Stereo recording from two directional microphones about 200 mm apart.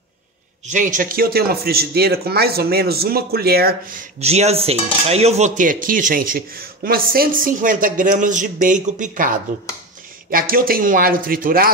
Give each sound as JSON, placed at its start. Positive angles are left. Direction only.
{"t": 0.7, "sound": "speech", "side_deg": -40}
{"t": 4.2, "sound": "cutlery", "side_deg": -30}
{"t": 10.3, "sound": "speech", "side_deg": -45}